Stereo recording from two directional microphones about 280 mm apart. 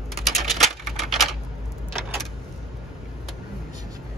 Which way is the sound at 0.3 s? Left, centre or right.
Centre.